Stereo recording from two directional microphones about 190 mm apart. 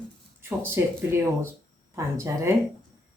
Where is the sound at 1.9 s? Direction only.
15° right (ahead or behind).